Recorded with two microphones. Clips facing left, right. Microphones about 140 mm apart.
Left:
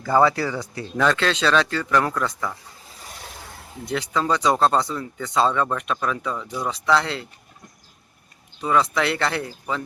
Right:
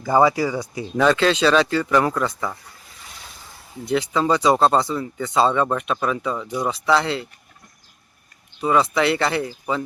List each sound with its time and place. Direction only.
0.0 s speech: 15° right (ahead or behind)
3.8 s speech: centre (ahead or behind)
6.4 s speech: 20° right (ahead or behind)
6.7 s speech: 5° right (ahead or behind)
8.6 s speech: 5° right (ahead or behind)